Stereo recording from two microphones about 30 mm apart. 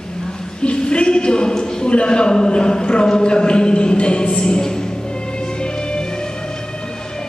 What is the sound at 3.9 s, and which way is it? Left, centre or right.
Music, left.